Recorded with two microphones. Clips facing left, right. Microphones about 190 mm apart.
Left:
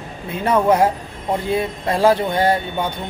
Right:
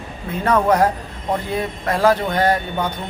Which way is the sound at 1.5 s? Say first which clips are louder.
Left 2 dB; 25° left (ahead or behind).